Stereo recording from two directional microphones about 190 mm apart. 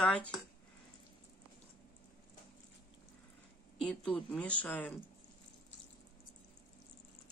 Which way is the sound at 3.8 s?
5° left (ahead or behind).